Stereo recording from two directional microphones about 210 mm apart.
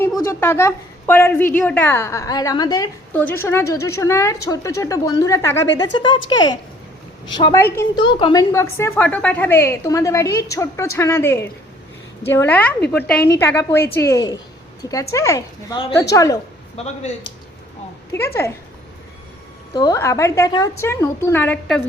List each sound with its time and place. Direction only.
0.3 s a woman's voice: 10° left (ahead or behind)
16.7 s speech: 30° left (ahead or behind)
18.4 s a woman's voice: 10° left (ahead or behind)
19.7 s a woman's voice: 15° left (ahead or behind)